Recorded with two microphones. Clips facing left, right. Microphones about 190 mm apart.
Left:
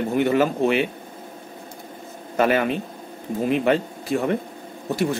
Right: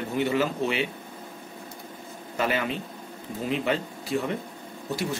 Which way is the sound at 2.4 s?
55° left (ahead or behind).